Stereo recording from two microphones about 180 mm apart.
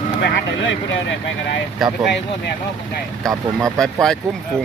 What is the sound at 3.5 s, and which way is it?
Speech, centre (ahead or behind).